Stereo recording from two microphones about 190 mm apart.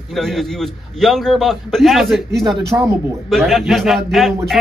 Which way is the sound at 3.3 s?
Centre (ahead or behind).